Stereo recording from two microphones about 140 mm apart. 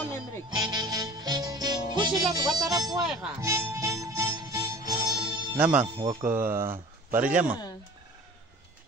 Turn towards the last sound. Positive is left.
turn(degrees=-10)  # may be behind; listen again after turning